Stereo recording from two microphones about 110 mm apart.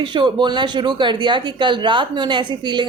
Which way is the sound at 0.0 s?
45° right (ahead or behind).